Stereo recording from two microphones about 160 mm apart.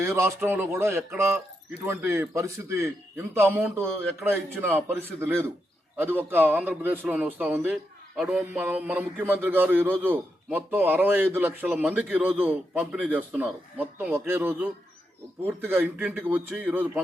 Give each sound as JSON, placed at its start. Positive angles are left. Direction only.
{"t": 0.0, "sound": "a man's voice", "side_deg": -15}